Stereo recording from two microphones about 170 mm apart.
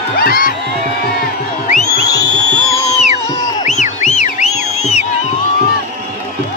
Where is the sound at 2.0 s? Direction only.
70° left (ahead or behind).